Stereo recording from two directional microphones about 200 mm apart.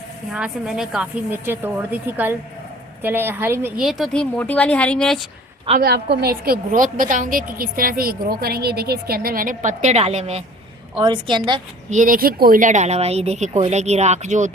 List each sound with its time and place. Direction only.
0.3 s a woman's voice: 5° right (ahead or behind)
3.8 s a woman's voice: centre (ahead or behind)
5.8 s a woman's voice: 55° right (ahead or behind); by 11.6 s 25° right (ahead or behind)
11.9 s speech: 40° right (ahead or behind)